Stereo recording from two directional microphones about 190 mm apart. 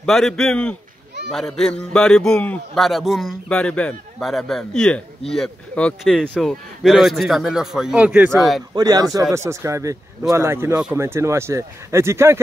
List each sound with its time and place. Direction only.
0.0 s a man's voice: centre (ahead or behind)
8.7 s a man's voice: 20° right (ahead or behind)